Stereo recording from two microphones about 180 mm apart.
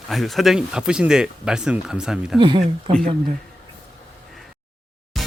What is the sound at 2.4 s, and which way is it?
Speech, 25° right (ahead or behind).